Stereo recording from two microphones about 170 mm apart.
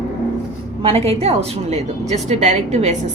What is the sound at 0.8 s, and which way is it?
A woman's voice, 35° right (ahead or behind).